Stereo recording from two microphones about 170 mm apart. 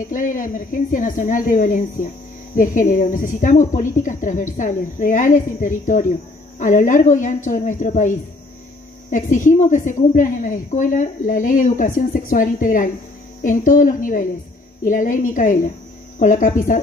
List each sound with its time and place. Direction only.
0.1 s a woman's voice: 50° left (ahead or behind)